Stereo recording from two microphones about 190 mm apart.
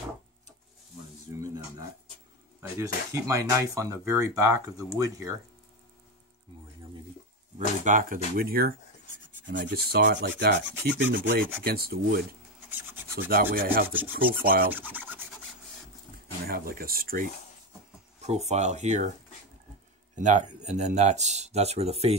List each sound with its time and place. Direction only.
1.4 s a sound: 15° right (ahead or behind)
2.8 s speech: 15° right (ahead or behind)
7.5 s speech: 40° right (ahead or behind)
9.5 s rub: 60° right (ahead or behind)
11.6 s speech: 55° right (ahead or behind)
12.6 s filing: 10° right (ahead or behind)
13.3 s speech: 50° right (ahead or behind)
14.7 s rub: 10° right (ahead or behind)
16.4 s speech: 50° right (ahead or behind)
18.2 s speech: 35° right (ahead or behind)
20.2 s speech: 40° right (ahead or behind)